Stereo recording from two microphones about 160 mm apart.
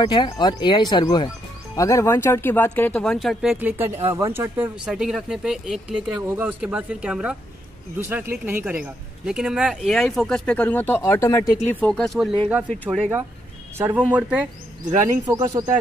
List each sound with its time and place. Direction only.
0.0 s speech: 30° left (ahead or behind); by 3.5 s centre (ahead or behind)
3.5 s speech: 10° right (ahead or behind); by 11.6 s 20° left (ahead or behind)
11.7 s speech: 5° left (ahead or behind); by 14.5 s 10° right (ahead or behind)
15.0 s speech: 25° right (ahead or behind)